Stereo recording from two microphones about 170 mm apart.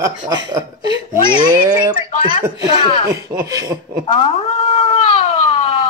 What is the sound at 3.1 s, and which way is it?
Speech, 20° right (ahead or behind).